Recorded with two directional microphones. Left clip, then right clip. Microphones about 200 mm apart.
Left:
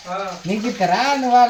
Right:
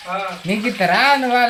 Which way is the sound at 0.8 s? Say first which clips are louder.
Right 3 dB; 15° right (ahead or behind).